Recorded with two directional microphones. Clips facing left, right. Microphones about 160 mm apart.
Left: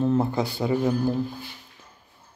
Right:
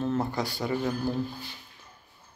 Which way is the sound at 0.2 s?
25° left (ahead or behind).